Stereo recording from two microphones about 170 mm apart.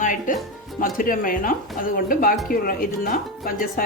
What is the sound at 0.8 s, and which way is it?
Speech, 55° left (ahead or behind).